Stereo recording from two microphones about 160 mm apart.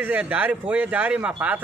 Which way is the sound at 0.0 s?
10° right (ahead or behind).